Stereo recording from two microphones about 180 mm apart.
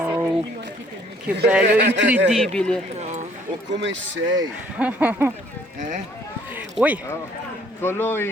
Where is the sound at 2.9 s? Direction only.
40° right (ahead or behind).